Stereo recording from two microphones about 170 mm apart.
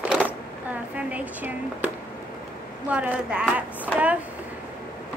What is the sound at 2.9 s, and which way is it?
Speech, 5° right (ahead or behind).